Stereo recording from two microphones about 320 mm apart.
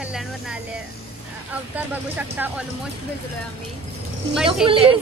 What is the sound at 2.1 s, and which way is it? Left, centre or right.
Speech, centre.